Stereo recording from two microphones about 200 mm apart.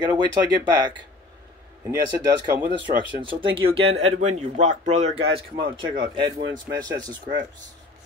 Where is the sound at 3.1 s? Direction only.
25° right (ahead or behind).